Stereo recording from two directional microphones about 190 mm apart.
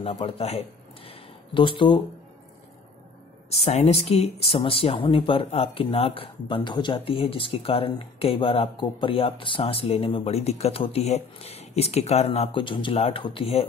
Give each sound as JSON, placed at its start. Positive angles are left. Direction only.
{"t": 0.0, "sound": "speech", "side_deg": 30}
{"t": 1.0, "sound": "a sound", "side_deg": 25}
{"t": 3.4, "sound": "speech", "side_deg": 35}